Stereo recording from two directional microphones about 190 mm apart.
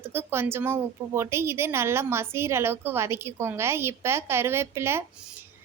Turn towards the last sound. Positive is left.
turn(degrees=-15)  # may be behind; listen again after turning